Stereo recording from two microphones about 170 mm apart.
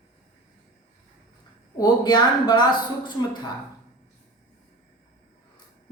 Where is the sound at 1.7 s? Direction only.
25° left (ahead or behind).